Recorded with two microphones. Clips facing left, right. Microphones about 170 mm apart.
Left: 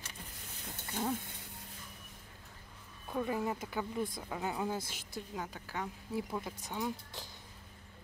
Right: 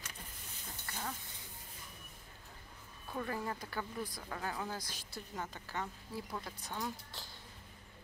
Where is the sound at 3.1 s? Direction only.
15° left (ahead or behind).